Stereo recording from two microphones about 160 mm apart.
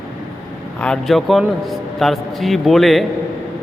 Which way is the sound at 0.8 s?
5° left (ahead or behind).